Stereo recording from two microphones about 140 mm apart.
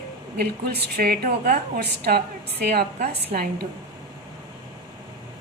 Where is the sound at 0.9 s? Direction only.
90° right.